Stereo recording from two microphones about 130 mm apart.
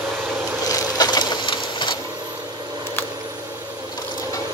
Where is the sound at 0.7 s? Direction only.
30° left (ahead or behind).